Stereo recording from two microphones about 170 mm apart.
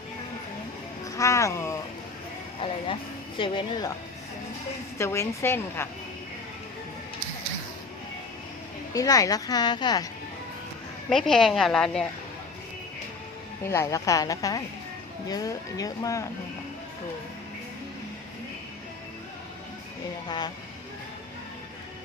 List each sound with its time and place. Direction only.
1.1 s speech: 20° left (ahead or behind)
2.6 s speech: 30° left (ahead or behind)
4.9 s a woman's voice: 15° left (ahead or behind)
8.9 s a woman's voice: 20° left (ahead or behind)
11.1 s a woman's voice: centre (ahead or behind)
13.7 s a woman's voice: 15° left (ahead or behind)
20.2 s a woman's voice: 25° left (ahead or behind)